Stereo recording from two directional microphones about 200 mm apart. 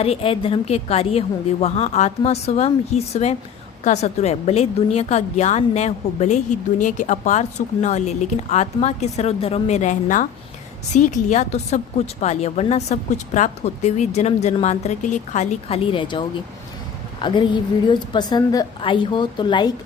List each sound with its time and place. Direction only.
0.0 s a woman's voice: 30° left (ahead or behind)